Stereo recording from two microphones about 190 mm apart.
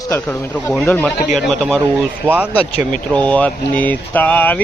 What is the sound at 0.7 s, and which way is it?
Speech, 10° left (ahead or behind).